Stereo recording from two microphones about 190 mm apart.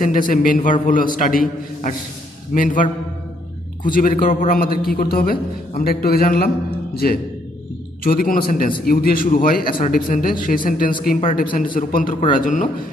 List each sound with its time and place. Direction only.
0.0 s a man's voice: 45° left (ahead or behind)
3.9 s a man's voice: 45° left (ahead or behind)
8.0 s a man's voice: 50° left (ahead or behind)